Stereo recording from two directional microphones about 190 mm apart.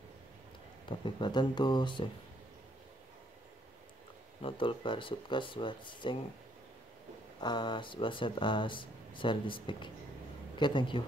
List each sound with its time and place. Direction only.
0.8 s speech: 25° left (ahead or behind)
4.4 s speech: 25° left (ahead or behind)
7.3 s speech: 20° left (ahead or behind)